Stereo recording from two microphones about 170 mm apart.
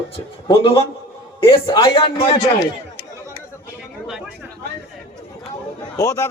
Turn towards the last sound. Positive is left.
turn(degrees=20)  # may be behind; listen again after turning